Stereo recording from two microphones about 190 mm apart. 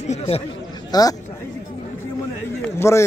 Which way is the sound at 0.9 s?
20° left (ahead or behind).